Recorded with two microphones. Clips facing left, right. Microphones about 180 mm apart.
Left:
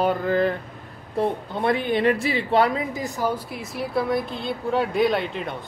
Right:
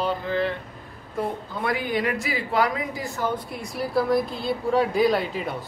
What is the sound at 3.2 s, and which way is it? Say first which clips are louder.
A woman's voice: left 1 dB; centre (ahead or behind).